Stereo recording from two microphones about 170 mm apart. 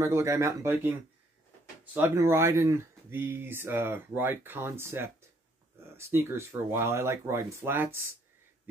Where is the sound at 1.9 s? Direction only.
15° right (ahead or behind).